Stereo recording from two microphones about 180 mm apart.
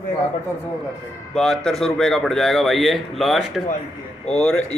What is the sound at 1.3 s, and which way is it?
Speech, 5° left (ahead or behind).